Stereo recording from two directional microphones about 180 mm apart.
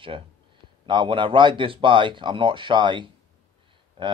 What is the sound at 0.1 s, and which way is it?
Speech, 30° right (ahead or behind).